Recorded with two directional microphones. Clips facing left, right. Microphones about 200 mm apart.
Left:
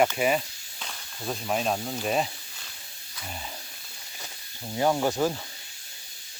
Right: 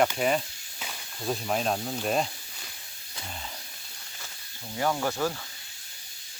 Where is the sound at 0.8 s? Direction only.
5° right (ahead or behind).